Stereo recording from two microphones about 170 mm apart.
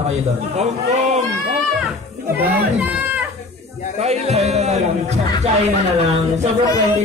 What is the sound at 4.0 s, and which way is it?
Speech, 40° right (ahead or behind).